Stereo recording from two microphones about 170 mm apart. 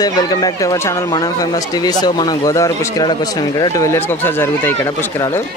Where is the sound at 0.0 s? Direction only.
25° left (ahead or behind).